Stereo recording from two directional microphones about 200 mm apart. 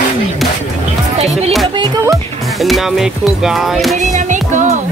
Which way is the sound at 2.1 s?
Centre (ahead or behind).